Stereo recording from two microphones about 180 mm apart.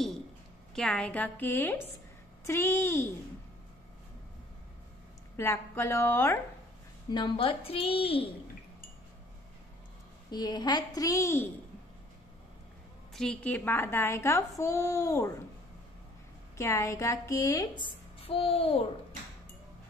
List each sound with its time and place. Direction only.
0.7 s a woman's voice: 5° left (ahead or behind)
5.3 s a woman's voice: 15° left (ahead or behind)
7.1 s a woman's voice: 25° left (ahead or behind)
10.3 s a child's voice: 25° left (ahead or behind)
13.1 s a woman's voice: 5° left (ahead or behind)
16.5 s a woman's voice: 15° left (ahead or behind)
18.2 s a woman's voice: 30° left (ahead or behind)